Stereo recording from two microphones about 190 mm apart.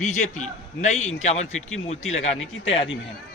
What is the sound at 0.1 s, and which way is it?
A man's voice, 40° left (ahead or behind).